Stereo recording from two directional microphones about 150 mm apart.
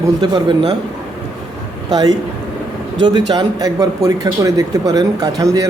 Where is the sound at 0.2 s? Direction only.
30° right (ahead or behind).